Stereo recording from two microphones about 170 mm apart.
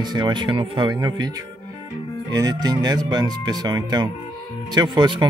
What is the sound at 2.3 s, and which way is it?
Speech, 20° right (ahead or behind).